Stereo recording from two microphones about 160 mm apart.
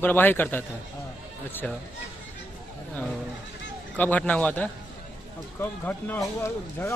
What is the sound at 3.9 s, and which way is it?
Speech, 10° left (ahead or behind).